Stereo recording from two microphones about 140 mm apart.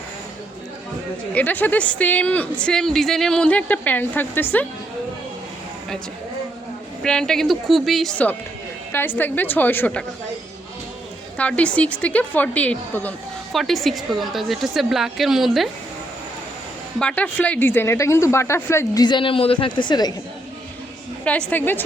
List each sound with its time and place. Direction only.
1.3 s speech: 10° left (ahead or behind)
7.0 s a woman's voice: 5° left (ahead or behind)
8.9 s speech: 15° left (ahead or behind)
11.3 s speech: 10° left (ahead or behind)
13.5 s a woman's voice: centre (ahead or behind)
17.0 s speech: 10° left (ahead or behind)
19.0 s speech: 35° left (ahead or behind)
21.2 s speech: 10° left (ahead or behind)